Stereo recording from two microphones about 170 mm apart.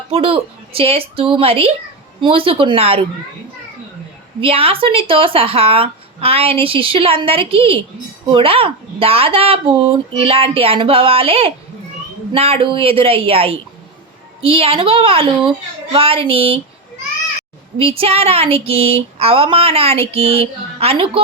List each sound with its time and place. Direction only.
0.1 s speech: 35° right (ahead or behind)
4.4 s speech: 35° right (ahead or behind)
17.7 s speech: 35° right (ahead or behind)